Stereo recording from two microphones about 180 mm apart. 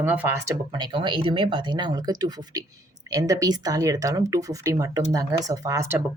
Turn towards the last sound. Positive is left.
turn(degrees=-15)  # may be behind; listen again after turning